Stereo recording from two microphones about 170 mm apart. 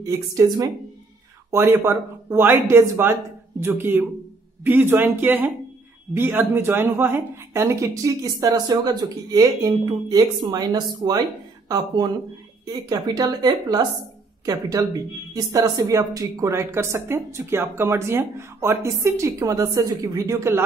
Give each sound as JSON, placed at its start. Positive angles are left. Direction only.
{"t": 0.0, "sound": "speech", "side_deg": -20}